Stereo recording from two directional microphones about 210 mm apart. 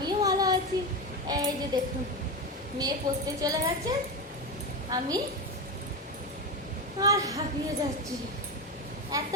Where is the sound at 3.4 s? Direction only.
15° right (ahead or behind).